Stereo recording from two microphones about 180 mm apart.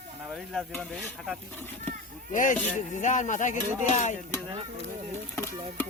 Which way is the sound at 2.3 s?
45° left (ahead or behind).